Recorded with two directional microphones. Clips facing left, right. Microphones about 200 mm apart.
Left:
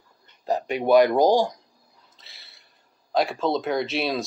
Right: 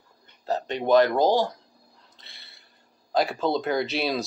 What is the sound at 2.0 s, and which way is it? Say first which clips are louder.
Speech: right 1 dB; centre (ahead or behind).